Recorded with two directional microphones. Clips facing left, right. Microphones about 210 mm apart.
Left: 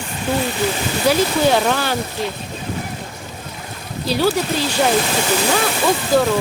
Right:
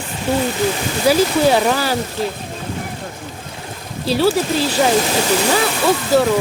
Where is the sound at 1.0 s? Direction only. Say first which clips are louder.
Right 2 dB; 5° right (ahead or behind).